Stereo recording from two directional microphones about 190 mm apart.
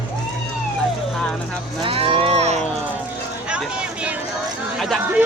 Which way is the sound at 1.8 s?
30° right (ahead or behind).